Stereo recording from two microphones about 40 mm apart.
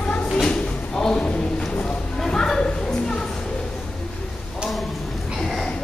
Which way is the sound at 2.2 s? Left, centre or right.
Centre.